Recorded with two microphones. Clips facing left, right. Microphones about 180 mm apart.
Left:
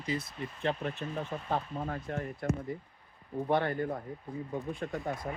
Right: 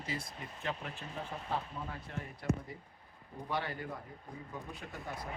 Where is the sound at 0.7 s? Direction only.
35° left (ahead or behind).